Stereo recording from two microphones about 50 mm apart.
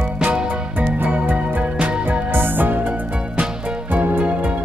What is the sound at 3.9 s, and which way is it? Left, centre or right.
Music, right.